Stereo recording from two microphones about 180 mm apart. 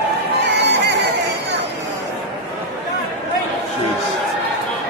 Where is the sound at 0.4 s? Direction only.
70° right (ahead or behind).